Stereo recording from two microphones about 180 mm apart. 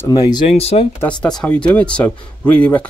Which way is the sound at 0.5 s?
35° left (ahead or behind).